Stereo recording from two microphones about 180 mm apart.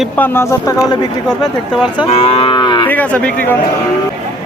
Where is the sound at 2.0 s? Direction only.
35° left (ahead or behind).